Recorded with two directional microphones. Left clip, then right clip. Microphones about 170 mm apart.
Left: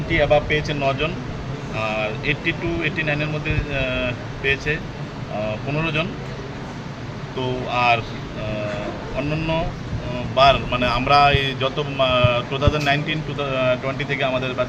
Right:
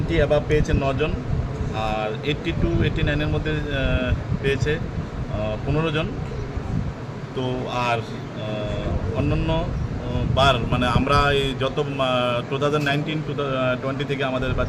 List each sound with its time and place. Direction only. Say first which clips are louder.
0.1 s speech: left 3 dB; 20° right (ahead or behind)
7.3 s speech: left 3 dB; 20° right (ahead or behind)
9.1 s speech: left 2 dB; 20° right (ahead or behind)